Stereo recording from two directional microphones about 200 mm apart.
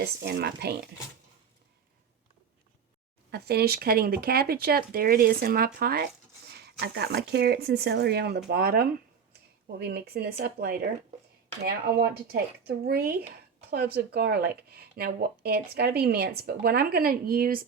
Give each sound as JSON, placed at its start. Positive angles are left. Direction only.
{"t": 0.0, "sound": "speech", "side_deg": -55}
{"t": 3.3, "sound": "speech", "side_deg": -55}